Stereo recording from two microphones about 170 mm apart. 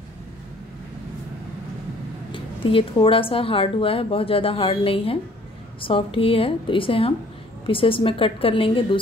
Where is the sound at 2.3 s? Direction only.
30° left (ahead or behind).